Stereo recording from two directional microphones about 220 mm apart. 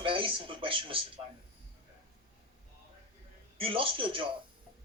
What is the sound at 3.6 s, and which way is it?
Speech, 25° right (ahead or behind).